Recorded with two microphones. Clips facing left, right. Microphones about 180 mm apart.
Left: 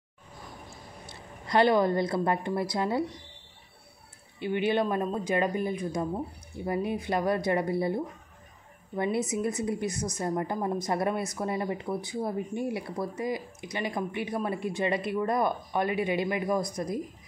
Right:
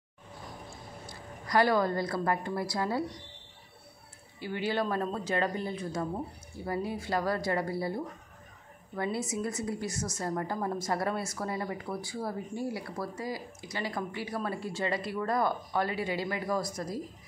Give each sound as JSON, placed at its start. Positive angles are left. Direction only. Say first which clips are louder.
{"t": 1.0, "sound": "a woman's voice", "louder": "even", "side_deg": 25}
{"t": 4.4, "sound": "a woman's voice", "louder": "left 5 dB", "side_deg": 20}